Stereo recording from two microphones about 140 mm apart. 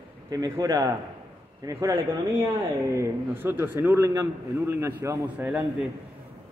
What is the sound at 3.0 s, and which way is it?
A man's voice, 15° right (ahead or behind).